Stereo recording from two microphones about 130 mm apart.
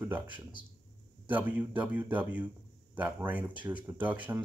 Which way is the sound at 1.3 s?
15° right (ahead or behind).